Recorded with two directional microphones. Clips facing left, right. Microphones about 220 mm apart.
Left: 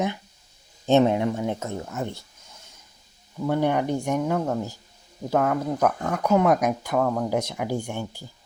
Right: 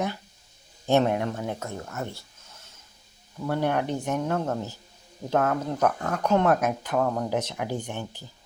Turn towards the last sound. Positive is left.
turn(degrees=10)  # may be behind; listen again after turning